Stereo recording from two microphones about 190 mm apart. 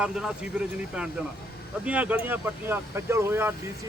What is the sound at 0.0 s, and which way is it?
Speech, 5° right (ahead or behind).